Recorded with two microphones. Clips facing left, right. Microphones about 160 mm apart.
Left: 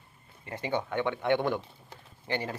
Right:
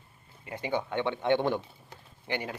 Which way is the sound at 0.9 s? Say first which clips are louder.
Right 1 dB; 20° right (ahead or behind).